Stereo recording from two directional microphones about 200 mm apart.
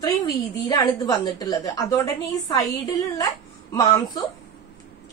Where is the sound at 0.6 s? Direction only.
20° left (ahead or behind).